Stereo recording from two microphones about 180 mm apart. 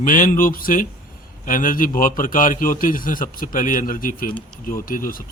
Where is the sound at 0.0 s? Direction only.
45° left (ahead or behind).